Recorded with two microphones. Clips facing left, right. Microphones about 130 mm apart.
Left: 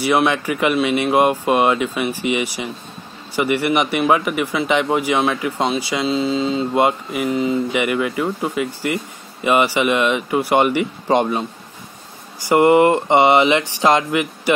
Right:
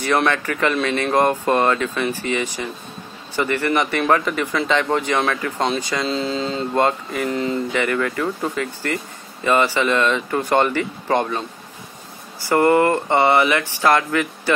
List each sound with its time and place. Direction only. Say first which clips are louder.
0.0 s speech: left 2 dB; 10° left (ahead or behind)
12.4 s speech: left 3 dB; 15° left (ahead or behind)